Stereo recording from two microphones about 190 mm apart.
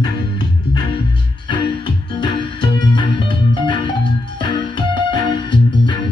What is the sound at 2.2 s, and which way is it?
Music, 25° left (ahead or behind).